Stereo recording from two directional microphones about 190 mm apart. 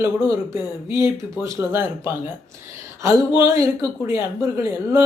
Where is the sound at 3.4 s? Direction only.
15° right (ahead or behind).